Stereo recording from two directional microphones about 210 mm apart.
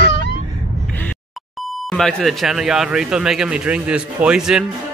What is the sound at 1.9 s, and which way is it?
A man's voice, centre (ahead or behind).